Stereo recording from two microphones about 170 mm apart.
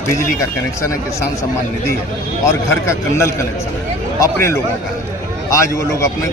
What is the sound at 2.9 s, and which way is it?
A man's voice, 15° left (ahead or behind).